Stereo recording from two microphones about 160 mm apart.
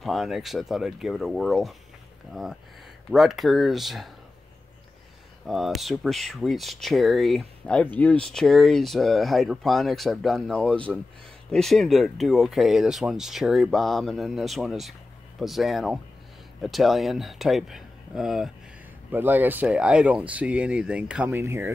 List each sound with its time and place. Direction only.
0.0 s speech: centre (ahead or behind)
3.1 s speech: centre (ahead or behind)
5.5 s speech: centre (ahead or behind); by 21.7 s 15° right (ahead or behind)